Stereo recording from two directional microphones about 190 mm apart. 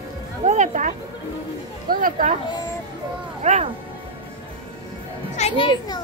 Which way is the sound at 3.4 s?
35° right (ahead or behind).